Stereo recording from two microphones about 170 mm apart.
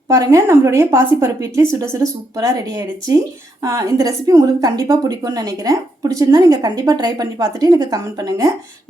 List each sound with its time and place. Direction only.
0.1 s a woman's voice: 20° right (ahead or behind)